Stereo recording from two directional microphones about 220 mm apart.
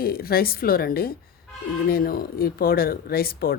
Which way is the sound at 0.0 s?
45° left (ahead or behind).